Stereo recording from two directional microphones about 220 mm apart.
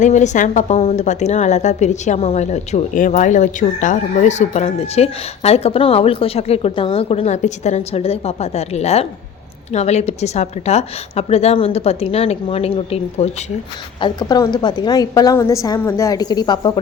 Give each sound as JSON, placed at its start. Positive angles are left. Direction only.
{"t": 0.0, "sound": "a woman's voice", "side_deg": 35}